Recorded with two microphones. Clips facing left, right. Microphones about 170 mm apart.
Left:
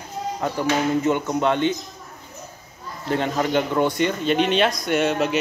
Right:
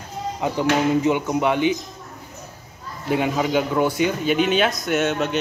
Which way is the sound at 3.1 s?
10° right (ahead or behind).